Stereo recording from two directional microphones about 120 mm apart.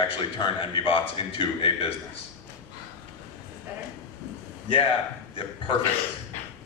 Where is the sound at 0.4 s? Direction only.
45° left (ahead or behind).